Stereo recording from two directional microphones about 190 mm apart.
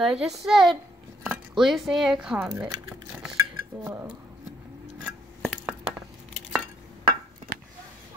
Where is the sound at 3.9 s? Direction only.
10° right (ahead or behind).